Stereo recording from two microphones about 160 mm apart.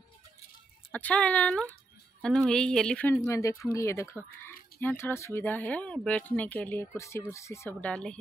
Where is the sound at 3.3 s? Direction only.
20° left (ahead or behind).